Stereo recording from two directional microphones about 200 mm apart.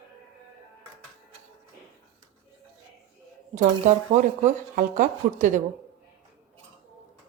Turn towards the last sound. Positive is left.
turn(degrees=-40)  # may be behind; listen again after turning